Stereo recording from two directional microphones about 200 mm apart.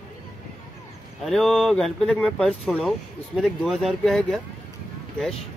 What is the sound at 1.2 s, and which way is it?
Speech, centre (ahead or behind).